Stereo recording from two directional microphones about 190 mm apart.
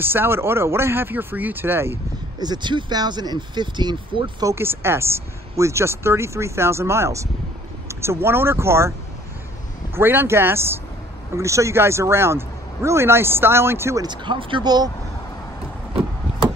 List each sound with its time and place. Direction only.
0.0 s speech: 10° right (ahead or behind)
2.4 s speech: 25° right (ahead or behind)
9.9 s speech: 10° right (ahead or behind)